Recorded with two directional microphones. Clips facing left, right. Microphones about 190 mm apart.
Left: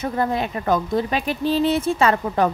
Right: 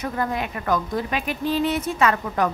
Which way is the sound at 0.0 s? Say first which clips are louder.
Left 3 dB; 30° left (ahead or behind).